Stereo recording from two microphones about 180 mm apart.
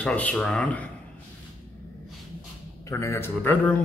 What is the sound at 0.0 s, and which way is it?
Speech, 5° left (ahead or behind).